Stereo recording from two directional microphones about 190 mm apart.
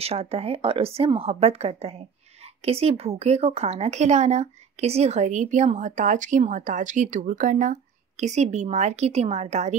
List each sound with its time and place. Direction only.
0.0 s speech: 30° right (ahead or behind)